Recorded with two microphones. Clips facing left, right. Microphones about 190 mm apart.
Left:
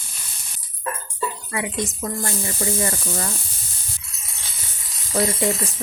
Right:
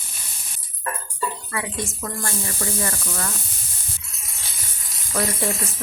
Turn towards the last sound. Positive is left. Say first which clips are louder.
# left 3 dB
turn(degrees=25)  # may be behind; listen again after turning